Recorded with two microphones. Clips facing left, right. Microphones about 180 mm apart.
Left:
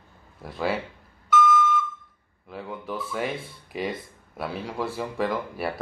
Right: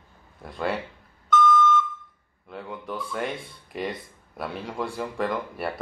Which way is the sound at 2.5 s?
Centre (ahead or behind).